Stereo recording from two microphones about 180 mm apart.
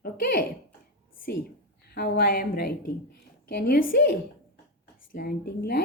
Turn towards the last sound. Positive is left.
turn(degrees=60)  # may be behind; listen again after turning